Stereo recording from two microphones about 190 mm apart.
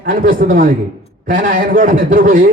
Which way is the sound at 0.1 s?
45° right (ahead or behind).